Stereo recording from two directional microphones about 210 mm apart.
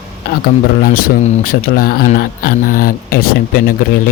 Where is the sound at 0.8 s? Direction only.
40° left (ahead or behind).